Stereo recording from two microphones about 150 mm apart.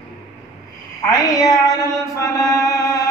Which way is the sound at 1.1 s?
25° left (ahead or behind).